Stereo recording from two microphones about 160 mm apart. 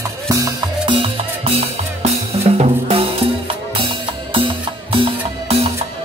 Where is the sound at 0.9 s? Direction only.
35° right (ahead or behind).